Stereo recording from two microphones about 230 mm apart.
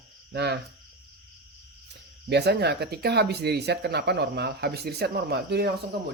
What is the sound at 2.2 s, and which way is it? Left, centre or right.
Speech, right.